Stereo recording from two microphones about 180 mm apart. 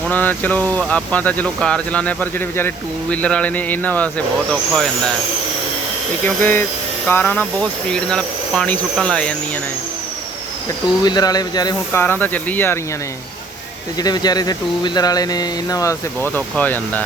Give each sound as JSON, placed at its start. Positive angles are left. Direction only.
{"t": 0.1, "sound": "speech", "side_deg": 10}
{"t": 6.2, "sound": "speech", "side_deg": 10}
{"t": 11.0, "sound": "speech", "side_deg": 20}
{"t": 11.9, "sound": "speech", "side_deg": 10}
{"t": 14.0, "sound": "speech", "side_deg": 20}